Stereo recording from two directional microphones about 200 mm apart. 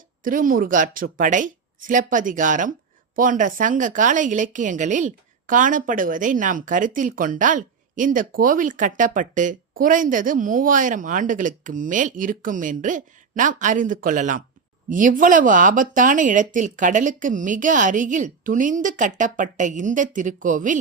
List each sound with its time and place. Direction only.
0.3 s a woman's voice: 45° right (ahead or behind)